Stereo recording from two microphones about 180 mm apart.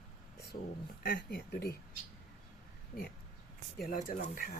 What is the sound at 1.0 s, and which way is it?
Speech, 60° left (ahead or behind).